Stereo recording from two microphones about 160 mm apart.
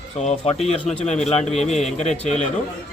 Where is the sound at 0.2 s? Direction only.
40° left (ahead or behind).